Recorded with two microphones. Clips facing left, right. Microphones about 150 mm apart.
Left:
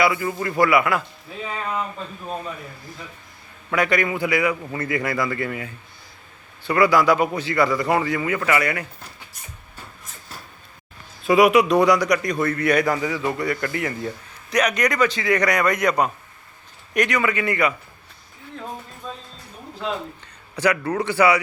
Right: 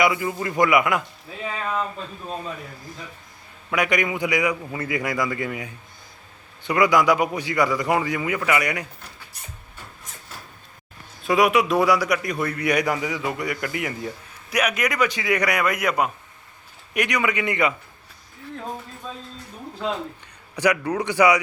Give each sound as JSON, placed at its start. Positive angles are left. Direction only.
{"t": 0.0, "sound": "speech", "side_deg": -20}
{"t": 3.7, "sound": "a man's voice", "side_deg": -15}
{"t": 11.2, "sound": "a man's voice", "side_deg": 0}
{"t": 20.6, "sound": "a man's voice", "side_deg": -15}